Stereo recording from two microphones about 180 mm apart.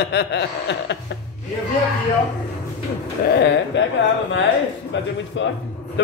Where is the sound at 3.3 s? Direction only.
75° left (ahead or behind).